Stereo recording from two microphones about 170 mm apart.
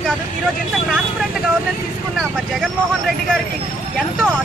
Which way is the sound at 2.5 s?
Centre (ahead or behind).